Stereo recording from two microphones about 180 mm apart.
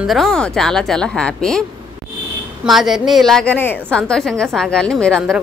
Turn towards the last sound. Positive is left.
turn(degrees=5)  # may be behind; listen again after turning